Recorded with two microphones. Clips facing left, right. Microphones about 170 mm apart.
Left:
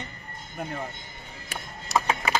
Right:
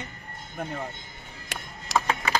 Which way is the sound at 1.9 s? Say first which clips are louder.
Even; 90° right.